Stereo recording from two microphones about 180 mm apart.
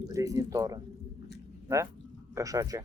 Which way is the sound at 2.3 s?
20° right (ahead or behind).